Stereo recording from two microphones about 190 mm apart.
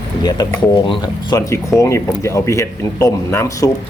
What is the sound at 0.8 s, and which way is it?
Speech, 20° left (ahead or behind).